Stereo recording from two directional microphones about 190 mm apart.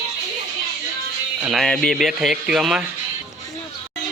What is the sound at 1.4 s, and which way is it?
Speech, centre (ahead or behind).